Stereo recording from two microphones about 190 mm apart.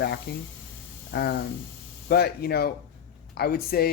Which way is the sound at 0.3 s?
60° left (ahead or behind).